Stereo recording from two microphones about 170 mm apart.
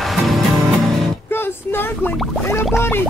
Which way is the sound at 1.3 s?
15° left (ahead or behind).